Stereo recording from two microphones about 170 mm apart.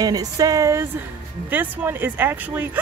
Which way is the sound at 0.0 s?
20° right (ahead or behind).